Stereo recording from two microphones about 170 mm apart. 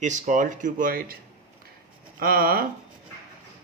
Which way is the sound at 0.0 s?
45° right (ahead or behind).